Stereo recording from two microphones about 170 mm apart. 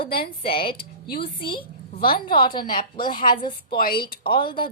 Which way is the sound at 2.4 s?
25° left (ahead or behind).